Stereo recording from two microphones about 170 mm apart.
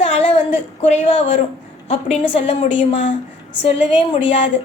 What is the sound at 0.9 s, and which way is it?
A woman's voice, 35° left (ahead or behind).